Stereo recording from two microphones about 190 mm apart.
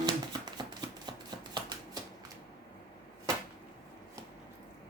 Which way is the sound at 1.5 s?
25° right (ahead or behind).